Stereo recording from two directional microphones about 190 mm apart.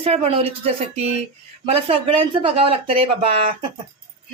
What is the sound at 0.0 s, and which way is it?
Speech, 30° right (ahead or behind).